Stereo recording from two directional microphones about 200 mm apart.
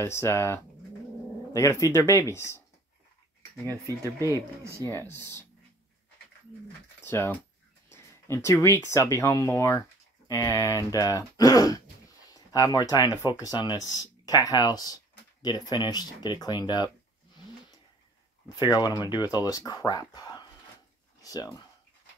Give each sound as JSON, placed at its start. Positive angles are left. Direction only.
{"t": 0.0, "sound": "speech", "side_deg": 15}
{"t": 3.6, "sound": "speech", "side_deg": -15}
{"t": 7.0, "sound": "speech", "side_deg": 10}
{"t": 18.6, "sound": "speech", "side_deg": 20}
{"t": 21.2, "sound": "a sound", "side_deg": 20}